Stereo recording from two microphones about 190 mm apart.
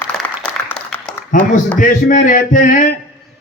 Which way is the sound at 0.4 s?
5° left (ahead or behind).